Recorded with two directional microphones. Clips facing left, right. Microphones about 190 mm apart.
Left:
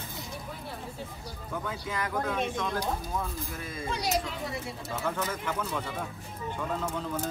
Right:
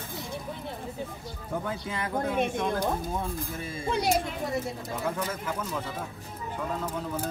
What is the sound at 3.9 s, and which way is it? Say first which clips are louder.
Speech: right 5 dB; 55° right (ahead or behind).